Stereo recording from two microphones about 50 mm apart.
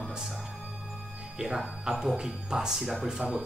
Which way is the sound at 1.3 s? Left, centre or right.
Centre.